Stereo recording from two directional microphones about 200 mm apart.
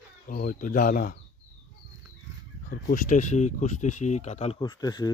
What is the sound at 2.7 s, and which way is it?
Speech, 45° left (ahead or behind).